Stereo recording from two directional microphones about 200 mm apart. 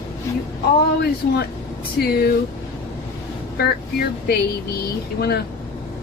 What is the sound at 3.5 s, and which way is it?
Speech, 50° left (ahead or behind).